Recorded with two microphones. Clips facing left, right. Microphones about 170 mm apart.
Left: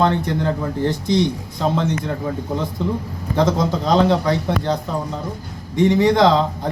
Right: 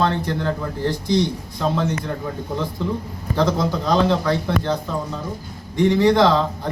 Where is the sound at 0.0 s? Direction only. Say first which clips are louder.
Left 3 dB; 20° left (ahead or behind).